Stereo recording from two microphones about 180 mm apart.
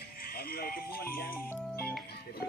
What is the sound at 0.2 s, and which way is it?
Speech, 55° left (ahead or behind).